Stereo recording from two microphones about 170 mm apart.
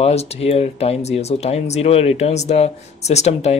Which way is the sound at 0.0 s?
40° left (ahead or behind).